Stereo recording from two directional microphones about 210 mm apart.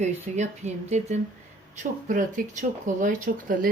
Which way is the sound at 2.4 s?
40° right (ahead or behind).